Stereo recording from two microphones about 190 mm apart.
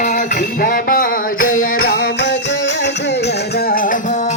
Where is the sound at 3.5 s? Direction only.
50° left (ahead or behind).